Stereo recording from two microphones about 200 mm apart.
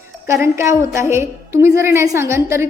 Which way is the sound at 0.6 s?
15° right (ahead or behind).